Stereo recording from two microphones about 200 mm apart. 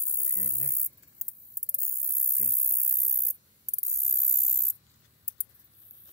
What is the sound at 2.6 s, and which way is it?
Spray, 15° right (ahead or behind).